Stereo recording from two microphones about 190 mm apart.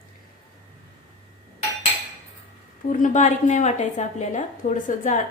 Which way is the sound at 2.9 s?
40° left (ahead or behind).